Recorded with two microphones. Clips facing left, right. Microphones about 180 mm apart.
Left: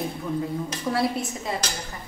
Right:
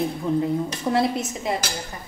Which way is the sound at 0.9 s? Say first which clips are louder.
Right 3 dB; 20° right (ahead or behind).